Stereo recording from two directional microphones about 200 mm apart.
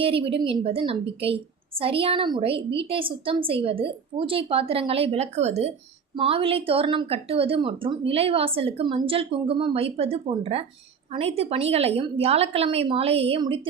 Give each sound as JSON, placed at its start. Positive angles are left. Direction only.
{"t": 0.0, "sound": "a woman's voice", "side_deg": -25}